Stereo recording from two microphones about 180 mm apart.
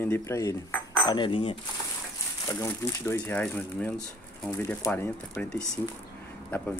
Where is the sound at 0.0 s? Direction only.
15° left (ahead or behind).